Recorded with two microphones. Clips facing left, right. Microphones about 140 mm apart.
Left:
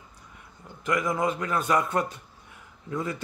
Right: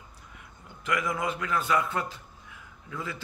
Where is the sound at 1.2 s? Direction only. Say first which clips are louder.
Left 3 dB; 35° left (ahead or behind).